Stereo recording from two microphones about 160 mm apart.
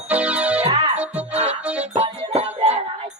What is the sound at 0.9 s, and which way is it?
Music, 10° right (ahead or behind).